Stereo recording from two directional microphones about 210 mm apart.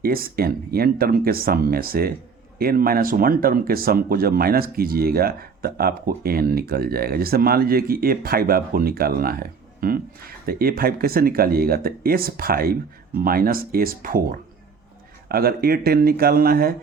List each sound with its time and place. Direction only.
0.0 s speech: 45° right (ahead or behind)